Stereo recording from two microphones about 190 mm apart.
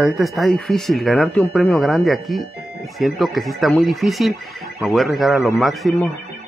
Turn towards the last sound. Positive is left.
turn(degrees=0)  # may be behind; listen again after turning